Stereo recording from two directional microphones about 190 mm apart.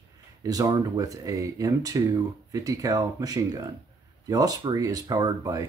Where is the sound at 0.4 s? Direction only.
20° right (ahead or behind).